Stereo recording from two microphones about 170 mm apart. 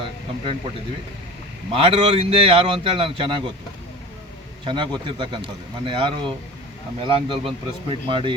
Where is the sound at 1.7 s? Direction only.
35° right (ahead or behind).